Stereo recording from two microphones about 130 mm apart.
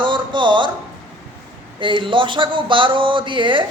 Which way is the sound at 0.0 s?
35° right (ahead or behind).